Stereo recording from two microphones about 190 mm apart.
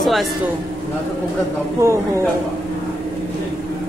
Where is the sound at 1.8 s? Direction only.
15° right (ahead or behind).